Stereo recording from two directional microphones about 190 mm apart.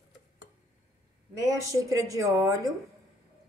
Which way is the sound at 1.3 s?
15° right (ahead or behind).